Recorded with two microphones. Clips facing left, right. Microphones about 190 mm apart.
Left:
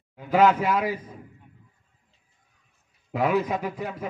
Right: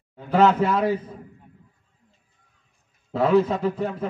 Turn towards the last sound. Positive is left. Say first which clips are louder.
# right 6 dB
turn(degrees=10)  # may be behind; listen again after turning